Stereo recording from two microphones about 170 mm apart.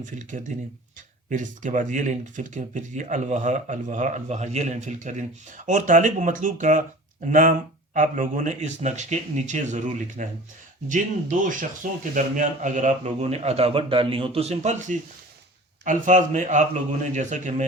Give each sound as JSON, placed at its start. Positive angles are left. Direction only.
{"t": 0.0, "sound": "speech", "side_deg": -50}